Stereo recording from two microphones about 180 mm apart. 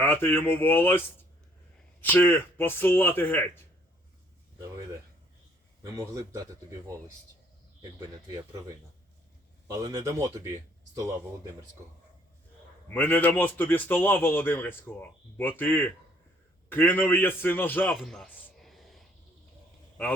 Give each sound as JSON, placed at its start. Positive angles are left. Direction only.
{"t": 0.0, "sound": "a man's voice", "side_deg": 10}
{"t": 5.8, "sound": "speech", "side_deg": -20}
{"t": 9.6, "sound": "speech", "side_deg": -20}
{"t": 12.9, "sound": "a man's voice", "side_deg": 10}
{"t": 17.9, "sound": "a sound", "side_deg": 0}